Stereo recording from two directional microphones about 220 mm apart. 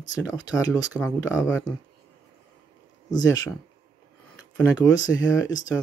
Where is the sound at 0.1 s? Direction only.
15° left (ahead or behind).